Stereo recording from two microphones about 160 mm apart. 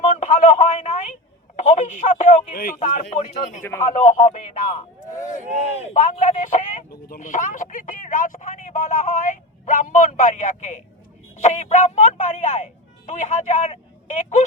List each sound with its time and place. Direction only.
0.2 s a sound: 50° left (ahead or behind)
1.5 s speech: 50° left (ahead or behind)
3.6 s speech: 15° left (ahead or behind)
3.8 s speech: 50° left (ahead or behind)